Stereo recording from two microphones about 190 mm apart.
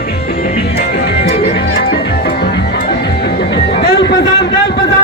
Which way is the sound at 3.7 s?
60° left (ahead or behind).